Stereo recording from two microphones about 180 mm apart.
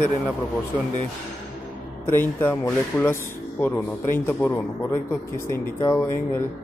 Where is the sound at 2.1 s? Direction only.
10° left (ahead or behind).